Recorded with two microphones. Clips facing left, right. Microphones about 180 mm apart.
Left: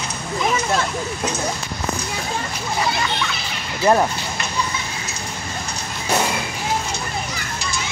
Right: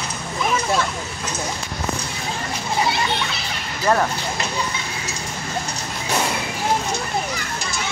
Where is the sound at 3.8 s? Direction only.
20° left (ahead or behind).